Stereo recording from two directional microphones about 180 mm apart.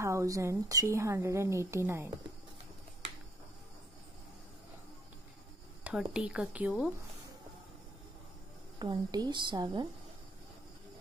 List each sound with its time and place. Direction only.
0.0 s a woman's voice: 15° right (ahead or behind)
6.1 s a woman's voice: 5° right (ahead or behind)
8.7 s speech: 25° right (ahead or behind)